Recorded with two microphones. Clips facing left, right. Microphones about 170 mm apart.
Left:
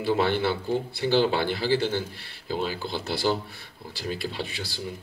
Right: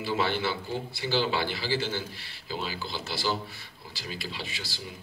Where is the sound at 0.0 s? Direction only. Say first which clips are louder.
Left 5 dB; 55° left (ahead or behind).